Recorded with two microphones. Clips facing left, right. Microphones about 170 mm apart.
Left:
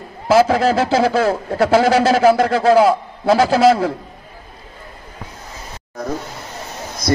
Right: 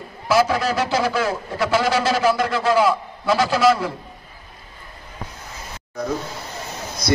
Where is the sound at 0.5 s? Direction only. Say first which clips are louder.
Left 6 dB; 30° left (ahead or behind).